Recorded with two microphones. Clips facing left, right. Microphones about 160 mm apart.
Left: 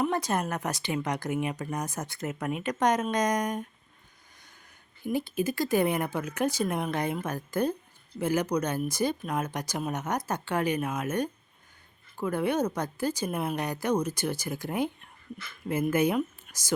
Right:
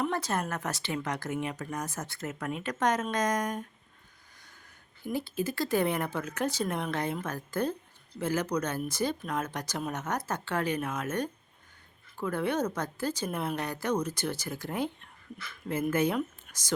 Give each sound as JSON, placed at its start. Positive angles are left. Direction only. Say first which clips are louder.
{"t": 0.0, "sound": "speech", "louder": "left 3 dB", "side_deg": 15}
{"t": 5.0, "sound": "speech", "louder": "left 3 dB", "side_deg": 15}